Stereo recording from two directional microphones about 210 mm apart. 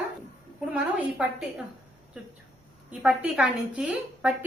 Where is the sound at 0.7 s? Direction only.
5° right (ahead or behind).